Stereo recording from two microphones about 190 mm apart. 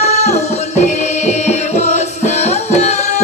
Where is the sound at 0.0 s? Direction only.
35° left (ahead or behind).